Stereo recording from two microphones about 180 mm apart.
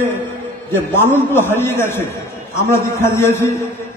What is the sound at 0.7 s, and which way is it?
A man's voice, 15° left (ahead or behind).